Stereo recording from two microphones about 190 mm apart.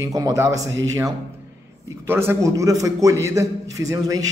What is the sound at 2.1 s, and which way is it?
Speech, 10° right (ahead or behind).